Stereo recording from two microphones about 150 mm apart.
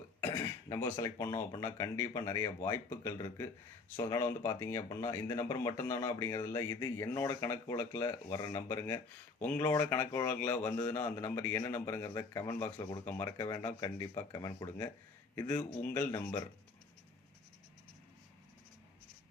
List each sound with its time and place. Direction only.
0.2 s speech: 15° left (ahead or behind)
15.4 s speech: 15° left (ahead or behind)